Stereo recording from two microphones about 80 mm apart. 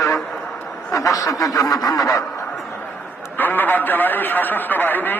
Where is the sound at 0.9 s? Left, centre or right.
Left.